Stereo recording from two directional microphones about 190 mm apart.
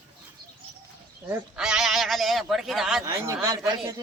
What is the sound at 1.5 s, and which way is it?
A man's voice, 5° right (ahead or behind).